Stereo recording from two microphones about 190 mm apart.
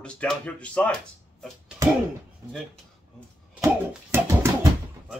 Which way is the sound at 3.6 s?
15° right (ahead or behind).